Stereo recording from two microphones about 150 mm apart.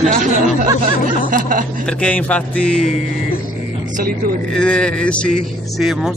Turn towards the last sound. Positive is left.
turn(degrees=0)  # may be behind; listen again after turning